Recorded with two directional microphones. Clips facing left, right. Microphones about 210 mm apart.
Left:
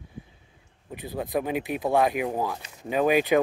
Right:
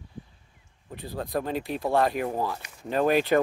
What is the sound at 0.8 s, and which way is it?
Speech, 20° left (ahead or behind).